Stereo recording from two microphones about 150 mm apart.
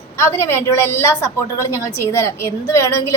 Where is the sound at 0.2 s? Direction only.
15° left (ahead or behind).